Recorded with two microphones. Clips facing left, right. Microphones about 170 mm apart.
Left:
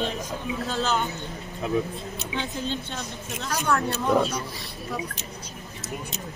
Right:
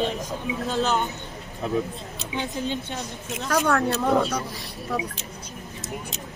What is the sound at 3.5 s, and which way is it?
Speech, 70° right (ahead or behind).